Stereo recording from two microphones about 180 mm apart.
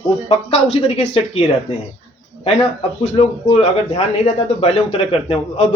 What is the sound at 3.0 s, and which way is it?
Speech, 35° left (ahead or behind).